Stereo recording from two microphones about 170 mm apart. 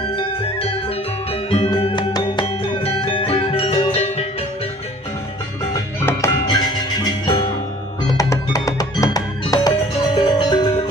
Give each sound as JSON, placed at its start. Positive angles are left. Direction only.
{"t": 0.1, "sound": "music", "side_deg": 35}
{"t": 5.7, "sound": "music", "side_deg": 15}